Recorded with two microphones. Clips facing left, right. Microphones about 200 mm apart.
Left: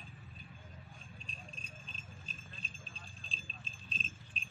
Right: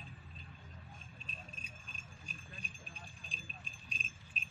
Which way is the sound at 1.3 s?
10° right (ahead or behind).